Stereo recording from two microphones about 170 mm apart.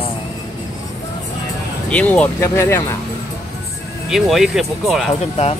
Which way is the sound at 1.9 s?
5° left (ahead or behind).